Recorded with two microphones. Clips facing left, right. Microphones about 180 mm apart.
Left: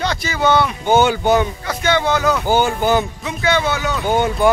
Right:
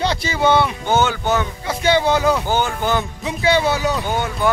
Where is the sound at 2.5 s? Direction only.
10° left (ahead or behind).